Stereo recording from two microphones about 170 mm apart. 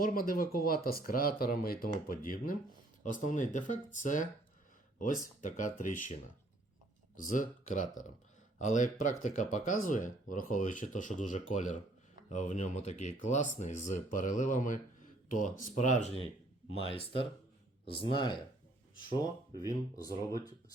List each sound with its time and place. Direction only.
0.0 s speech: 55° left (ahead or behind)
7.2 s speech: 50° left (ahead or behind); by 18.3 s 30° left (ahead or behind)
19.6 s speech: 20° left (ahead or behind)